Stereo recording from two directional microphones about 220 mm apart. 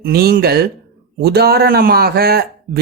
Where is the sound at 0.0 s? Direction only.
45° right (ahead or behind).